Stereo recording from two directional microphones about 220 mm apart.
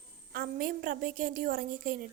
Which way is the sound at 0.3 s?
40° right (ahead or behind).